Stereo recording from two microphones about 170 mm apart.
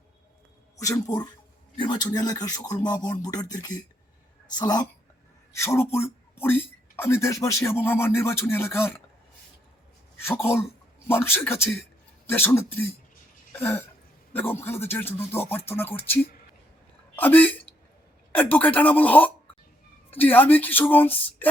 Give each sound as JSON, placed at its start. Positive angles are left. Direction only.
{"t": 0.8, "sound": "speech", "side_deg": 20}
{"t": 10.2, "sound": "speech", "side_deg": 15}
{"t": 17.2, "sound": "speech", "side_deg": 10}